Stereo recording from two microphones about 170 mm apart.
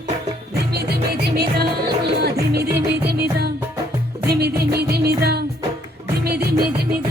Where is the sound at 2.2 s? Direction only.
65° right (ahead or behind).